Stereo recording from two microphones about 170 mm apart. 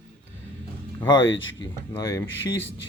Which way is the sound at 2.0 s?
20° left (ahead or behind).